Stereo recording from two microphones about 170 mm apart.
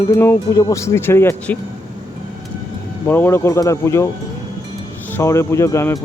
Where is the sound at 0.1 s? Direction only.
15° left (ahead or behind).